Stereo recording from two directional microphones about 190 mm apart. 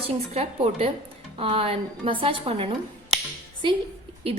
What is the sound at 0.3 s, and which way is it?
A woman's voice, 35° right (ahead or behind).